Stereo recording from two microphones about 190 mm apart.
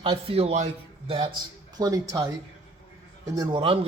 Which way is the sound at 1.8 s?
20° right (ahead or behind).